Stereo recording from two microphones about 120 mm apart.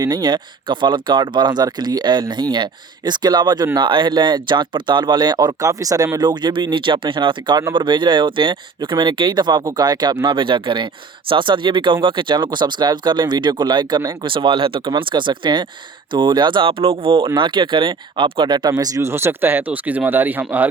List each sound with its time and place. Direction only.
0.0 s speech: 35° right (ahead or behind); by 20.7 s 15° right (ahead or behind)